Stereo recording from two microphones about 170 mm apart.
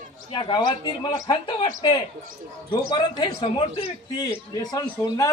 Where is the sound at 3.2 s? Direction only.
30° left (ahead or behind).